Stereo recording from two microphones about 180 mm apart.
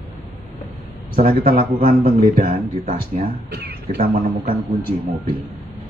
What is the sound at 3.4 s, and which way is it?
Speech, 65° right (ahead or behind).